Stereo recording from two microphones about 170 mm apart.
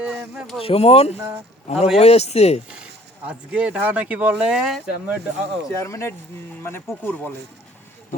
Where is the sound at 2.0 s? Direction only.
40° left (ahead or behind).